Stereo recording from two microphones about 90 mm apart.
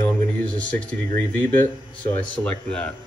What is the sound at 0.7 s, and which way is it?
Speech, 15° left (ahead or behind).